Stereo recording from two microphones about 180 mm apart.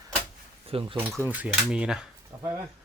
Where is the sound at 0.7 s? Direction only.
30° right (ahead or behind).